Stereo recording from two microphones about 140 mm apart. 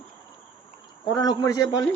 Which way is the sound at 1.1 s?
25° left (ahead or behind).